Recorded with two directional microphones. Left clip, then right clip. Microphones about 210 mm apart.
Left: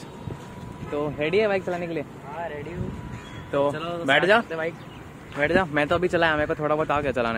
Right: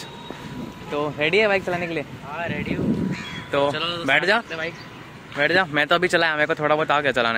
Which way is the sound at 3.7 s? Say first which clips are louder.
Right 5 dB; 35° left (ahead or behind).